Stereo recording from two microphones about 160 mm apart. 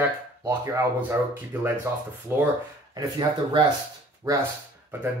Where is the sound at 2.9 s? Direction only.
25° right (ahead or behind).